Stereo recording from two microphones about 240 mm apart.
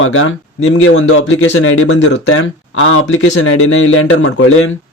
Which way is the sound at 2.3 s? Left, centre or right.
Left.